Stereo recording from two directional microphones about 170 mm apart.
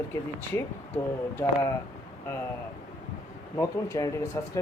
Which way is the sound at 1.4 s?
15° left (ahead or behind).